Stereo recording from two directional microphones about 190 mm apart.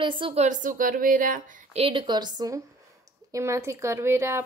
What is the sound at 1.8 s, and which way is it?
A woman's voice, 25° right (ahead or behind).